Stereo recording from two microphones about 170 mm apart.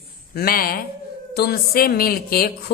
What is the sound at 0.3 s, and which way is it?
A woman's voice, 60° left (ahead or behind).